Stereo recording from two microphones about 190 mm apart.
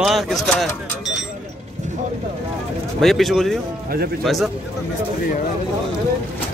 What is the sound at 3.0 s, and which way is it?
Speech, centre (ahead or behind).